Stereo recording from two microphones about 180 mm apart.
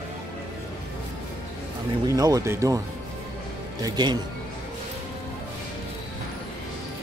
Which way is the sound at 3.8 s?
25° right (ahead or behind).